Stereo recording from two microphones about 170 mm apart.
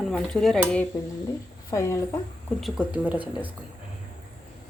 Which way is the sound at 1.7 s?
15° left (ahead or behind).